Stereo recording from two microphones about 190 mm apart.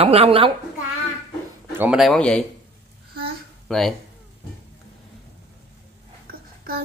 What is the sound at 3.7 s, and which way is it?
Speech, centre (ahead or behind).